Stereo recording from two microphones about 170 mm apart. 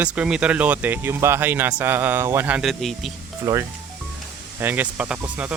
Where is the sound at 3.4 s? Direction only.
20° right (ahead or behind).